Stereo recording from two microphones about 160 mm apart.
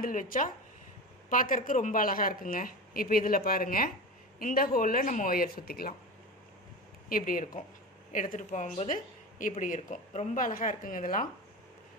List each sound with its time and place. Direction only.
0.0 s speech: 60° left (ahead or behind)
7.1 s a woman's voice: 60° left (ahead or behind)